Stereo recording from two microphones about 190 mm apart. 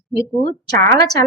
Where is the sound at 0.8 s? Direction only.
15° left (ahead or behind).